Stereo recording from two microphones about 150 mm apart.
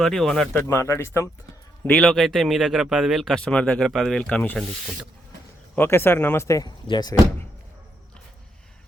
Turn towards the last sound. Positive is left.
turn(degrees=30)  # may be behind; listen again after turning